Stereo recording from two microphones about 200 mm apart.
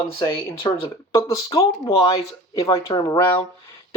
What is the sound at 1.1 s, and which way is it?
Speech, 15° left (ahead or behind).